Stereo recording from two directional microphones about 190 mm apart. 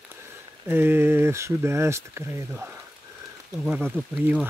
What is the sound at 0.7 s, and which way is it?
Speech, 10° right (ahead or behind).